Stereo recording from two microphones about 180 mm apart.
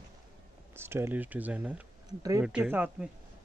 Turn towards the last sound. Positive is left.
turn(degrees=-10)  # may be behind; listen again after turning